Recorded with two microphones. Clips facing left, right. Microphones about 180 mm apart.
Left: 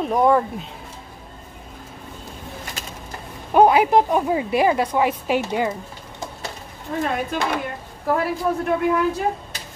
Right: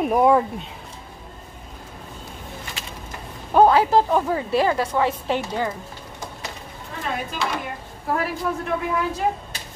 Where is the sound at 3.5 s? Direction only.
15° left (ahead or behind).